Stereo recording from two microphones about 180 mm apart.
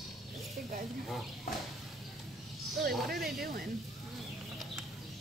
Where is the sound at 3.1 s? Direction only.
60° right (ahead or behind).